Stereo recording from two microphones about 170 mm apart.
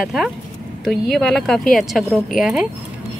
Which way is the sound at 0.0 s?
Centre (ahead or behind).